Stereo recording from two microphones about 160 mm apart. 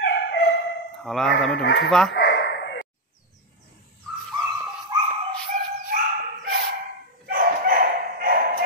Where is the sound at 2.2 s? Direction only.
90° left.